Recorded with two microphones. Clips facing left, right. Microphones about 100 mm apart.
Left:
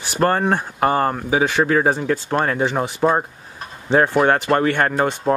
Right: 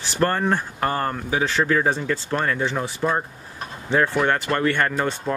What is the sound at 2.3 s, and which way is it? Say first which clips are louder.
Speech: left 3 dB; 50° left (ahead or behind).